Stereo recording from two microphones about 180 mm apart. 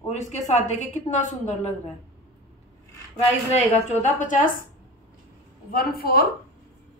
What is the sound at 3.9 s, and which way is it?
Speech, 40° left (ahead or behind).